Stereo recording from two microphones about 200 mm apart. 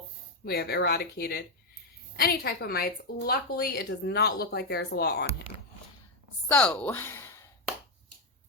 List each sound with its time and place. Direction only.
0.4 s a woman's voice: 50° left (ahead or behind)
6.5 s speech: 5° left (ahead or behind)